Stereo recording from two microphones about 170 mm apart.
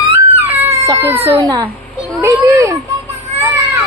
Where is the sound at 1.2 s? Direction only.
40° right (ahead or behind).